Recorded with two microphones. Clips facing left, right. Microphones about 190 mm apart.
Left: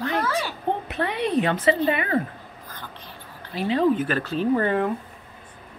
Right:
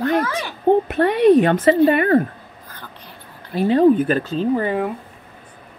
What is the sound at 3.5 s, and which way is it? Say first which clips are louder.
Speech: right 7 dB; 45° right (ahead or behind).